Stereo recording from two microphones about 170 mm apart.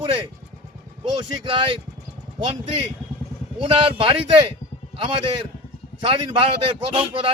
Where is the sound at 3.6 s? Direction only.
30° right (ahead or behind).